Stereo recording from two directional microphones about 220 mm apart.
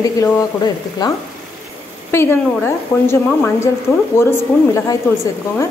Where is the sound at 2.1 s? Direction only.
10° left (ahead or behind).